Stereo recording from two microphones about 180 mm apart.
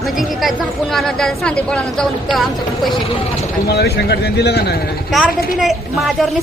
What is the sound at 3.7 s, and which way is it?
A man's voice, 60° left (ahead or behind).